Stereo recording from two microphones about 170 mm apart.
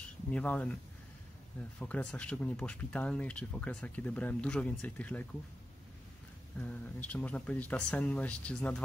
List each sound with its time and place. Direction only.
0.3 s speech: 10° left (ahead or behind)
1.8 s speech: 5° left (ahead or behind)
6.6 s speech: 10° left (ahead or behind)